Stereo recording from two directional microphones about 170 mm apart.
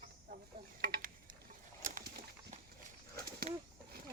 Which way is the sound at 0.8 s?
60° right (ahead or behind).